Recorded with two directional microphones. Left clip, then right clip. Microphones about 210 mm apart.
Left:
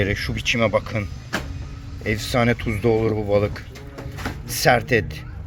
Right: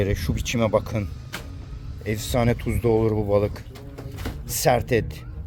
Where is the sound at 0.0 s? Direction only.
15° right (ahead or behind).